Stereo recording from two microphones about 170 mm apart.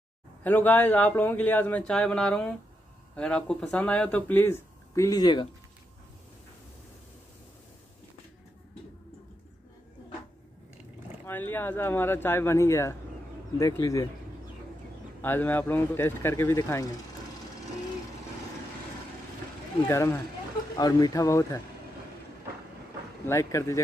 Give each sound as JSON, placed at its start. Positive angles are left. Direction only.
{"t": 0.4, "sound": "speech", "side_deg": 10}
{"t": 11.2, "sound": "speech", "side_deg": 10}
{"t": 15.2, "sound": "speech", "side_deg": 10}
{"t": 19.9, "sound": "speech", "side_deg": 15}
{"t": 23.2, "sound": "speech", "side_deg": 15}